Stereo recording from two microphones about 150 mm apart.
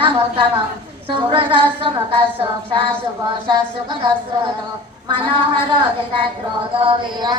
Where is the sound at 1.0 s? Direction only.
35° right (ahead or behind).